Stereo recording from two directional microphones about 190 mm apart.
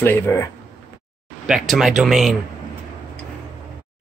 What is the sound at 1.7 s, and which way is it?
Speech, centre (ahead or behind).